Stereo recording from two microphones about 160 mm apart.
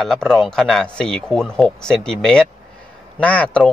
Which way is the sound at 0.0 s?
5° left (ahead or behind).